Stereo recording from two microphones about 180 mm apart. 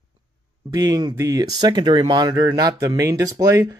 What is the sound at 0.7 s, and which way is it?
Speech, 20° right (ahead or behind).